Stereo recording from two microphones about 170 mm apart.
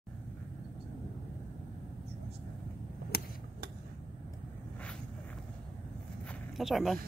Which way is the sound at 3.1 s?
60° left (ahead or behind).